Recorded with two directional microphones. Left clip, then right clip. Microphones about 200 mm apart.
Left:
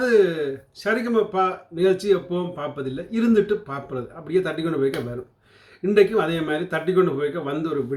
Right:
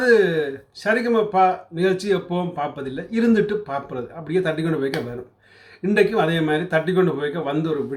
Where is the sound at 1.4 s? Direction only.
15° right (ahead or behind).